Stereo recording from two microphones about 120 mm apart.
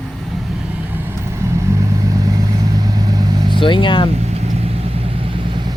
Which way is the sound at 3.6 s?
45° left (ahead or behind).